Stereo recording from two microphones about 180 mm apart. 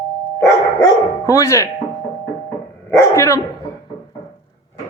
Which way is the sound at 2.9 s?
15° left (ahead or behind).